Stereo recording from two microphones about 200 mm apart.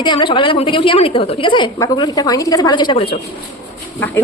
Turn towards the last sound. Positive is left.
turn(degrees=10)  # may be behind; listen again after turning